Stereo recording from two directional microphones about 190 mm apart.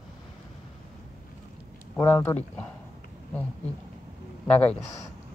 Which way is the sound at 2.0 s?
10° left (ahead or behind).